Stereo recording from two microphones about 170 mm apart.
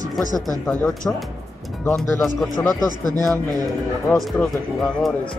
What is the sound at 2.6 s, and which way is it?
Speech, centre (ahead or behind).